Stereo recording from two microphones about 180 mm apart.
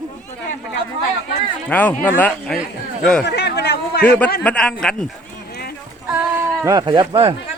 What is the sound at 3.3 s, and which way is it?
Speech, 70° left (ahead or behind).